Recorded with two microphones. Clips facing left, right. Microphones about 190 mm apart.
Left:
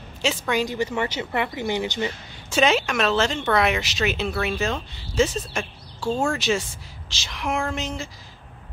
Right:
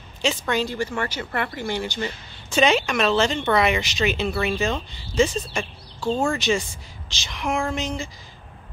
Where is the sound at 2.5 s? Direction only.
5° left (ahead or behind).